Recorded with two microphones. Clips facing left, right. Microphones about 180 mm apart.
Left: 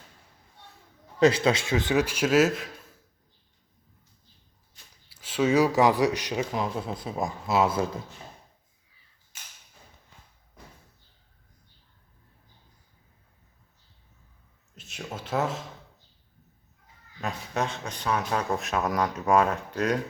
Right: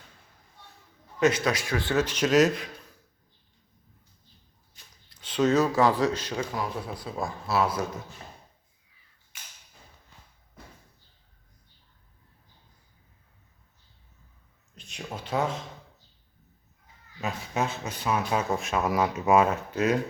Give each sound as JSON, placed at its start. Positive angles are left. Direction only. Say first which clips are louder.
{"t": 1.2, "sound": "speech", "louder": "left 3 dB", "side_deg": 30}
{"t": 5.0, "sound": "speech", "louder": "right 1 dB", "side_deg": 5}
{"t": 14.8, "sound": "a sound", "louder": "even", "side_deg": 5}
{"t": 17.2, "sound": "speech", "louder": "even", "side_deg": 0}